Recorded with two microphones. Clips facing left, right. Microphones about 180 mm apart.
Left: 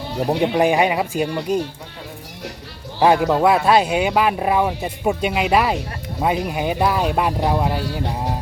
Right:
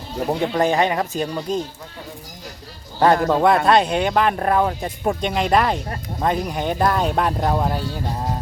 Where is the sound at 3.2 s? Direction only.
5° left (ahead or behind).